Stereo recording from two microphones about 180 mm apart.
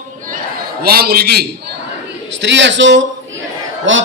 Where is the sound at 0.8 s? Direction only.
60° right (ahead or behind).